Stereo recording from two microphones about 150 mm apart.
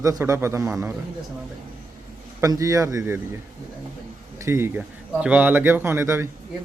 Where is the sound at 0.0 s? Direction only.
20° right (ahead or behind).